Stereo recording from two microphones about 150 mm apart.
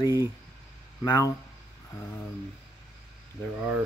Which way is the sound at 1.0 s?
25° left (ahead or behind).